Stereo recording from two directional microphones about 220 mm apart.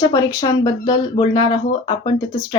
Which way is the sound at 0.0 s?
15° left (ahead or behind).